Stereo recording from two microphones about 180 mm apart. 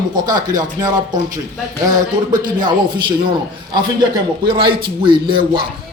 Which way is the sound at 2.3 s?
25° right (ahead or behind).